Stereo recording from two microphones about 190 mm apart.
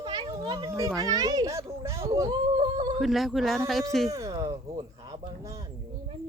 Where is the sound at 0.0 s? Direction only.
25° right (ahead or behind).